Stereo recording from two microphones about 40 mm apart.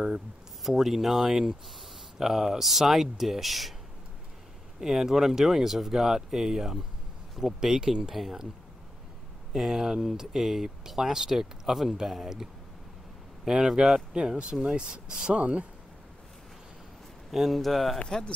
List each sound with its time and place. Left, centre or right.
0.7 s speech: centre
1.3 s speech: centre
4.7 s speech: centre
9.6 s speech: centre
13.5 s speech: centre
17.3 s speech: centre
18.0 s speech: centre